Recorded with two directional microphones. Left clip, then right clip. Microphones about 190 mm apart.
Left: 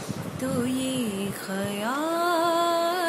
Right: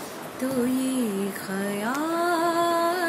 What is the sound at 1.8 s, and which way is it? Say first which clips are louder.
Music: even; 10° left (ahead or behind).